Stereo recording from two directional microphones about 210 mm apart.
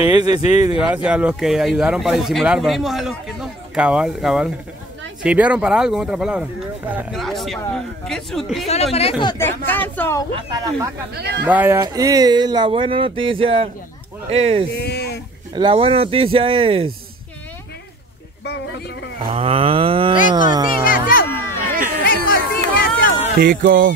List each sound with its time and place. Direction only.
0.3 s speech: 30° left (ahead or behind)
0.7 s speech: 5° right (ahead or behind)
9.2 s speech: 20° left (ahead or behind)
10.3 s speech: 20° right (ahead or behind)
11.1 s music: 50° right (ahead or behind)
11.4 s speech: 10° right (ahead or behind); by 14.6 s 30° right (ahead or behind)
14.8 s speech: 50° left (ahead or behind)
15.5 s speech: 25° right (ahead or behind)
18.4 s a sound: 55° left (ahead or behind)
19.3 s speech: 25° right (ahead or behind)
20.8 s speech: 45° left (ahead or behind)
21.3 s a sound: 10° left (ahead or behind)
22.0 s a sound: 45° left (ahead or behind)
23.4 s music: 45° right (ahead or behind)